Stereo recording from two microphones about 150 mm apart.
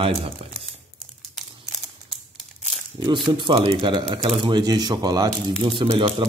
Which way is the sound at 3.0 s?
30° right (ahead or behind).